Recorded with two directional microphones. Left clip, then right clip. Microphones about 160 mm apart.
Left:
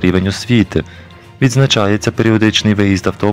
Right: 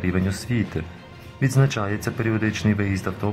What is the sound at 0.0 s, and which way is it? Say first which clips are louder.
Speech: left 11 dB; 35° left (ahead or behind).